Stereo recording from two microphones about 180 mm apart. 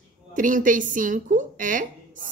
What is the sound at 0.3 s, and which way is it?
Speech, 45° right (ahead or behind).